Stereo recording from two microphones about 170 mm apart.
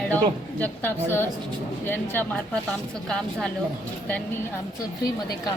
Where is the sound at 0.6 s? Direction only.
10° left (ahead or behind).